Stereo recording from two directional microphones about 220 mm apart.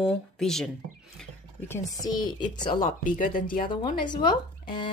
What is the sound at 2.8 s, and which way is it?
Speech, 40° left (ahead or behind).